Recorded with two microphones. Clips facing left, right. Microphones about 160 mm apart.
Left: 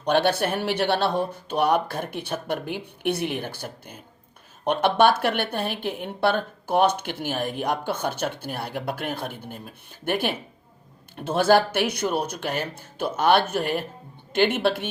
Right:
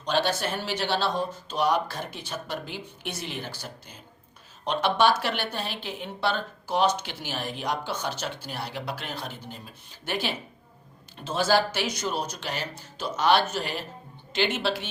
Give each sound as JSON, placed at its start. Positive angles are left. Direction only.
{"t": 0.0, "sound": "speech", "side_deg": 60}